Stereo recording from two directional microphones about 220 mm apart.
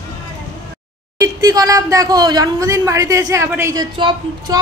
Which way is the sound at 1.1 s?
15° right (ahead or behind).